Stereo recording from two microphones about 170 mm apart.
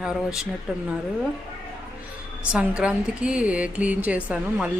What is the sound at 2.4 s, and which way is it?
Speech, 5° right (ahead or behind).